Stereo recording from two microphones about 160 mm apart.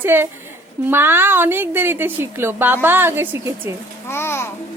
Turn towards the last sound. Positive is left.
turn(degrees=15)  # may be behind; listen again after turning